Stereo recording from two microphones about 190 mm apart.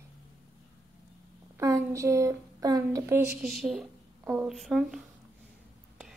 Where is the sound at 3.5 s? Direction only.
Centre (ahead or behind).